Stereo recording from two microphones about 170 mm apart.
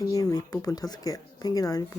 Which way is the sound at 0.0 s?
20° left (ahead or behind).